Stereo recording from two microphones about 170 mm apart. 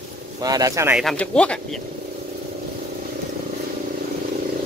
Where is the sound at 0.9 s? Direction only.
Centre (ahead or behind).